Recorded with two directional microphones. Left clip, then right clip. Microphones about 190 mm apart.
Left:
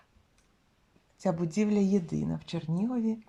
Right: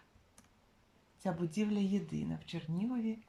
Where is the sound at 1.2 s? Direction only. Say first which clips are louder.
Left 7 dB; 20° left (ahead or behind).